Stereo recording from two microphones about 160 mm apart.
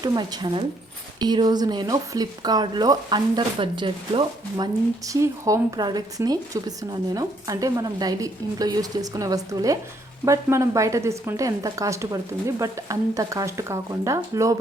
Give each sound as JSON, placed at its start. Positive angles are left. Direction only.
{"t": 0.0, "sound": "speech", "side_deg": -25}